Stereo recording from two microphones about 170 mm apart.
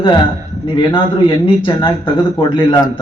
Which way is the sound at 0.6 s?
30° left (ahead or behind).